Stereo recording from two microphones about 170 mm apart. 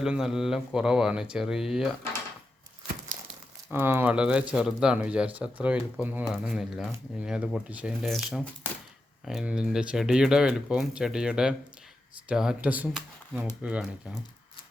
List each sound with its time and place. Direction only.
0.0 s speech: 5° right (ahead or behind)
3.7 s speech: 15° right (ahead or behind)